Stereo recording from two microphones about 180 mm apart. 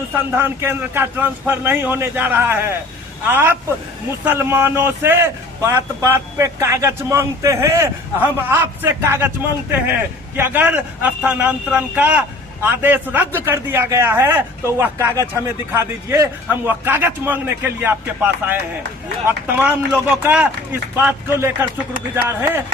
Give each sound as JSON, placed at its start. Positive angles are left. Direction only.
{"t": 0.3, "sound": "a man's voice", "side_deg": -10}
{"t": 19.5, "sound": "a man's voice", "side_deg": -10}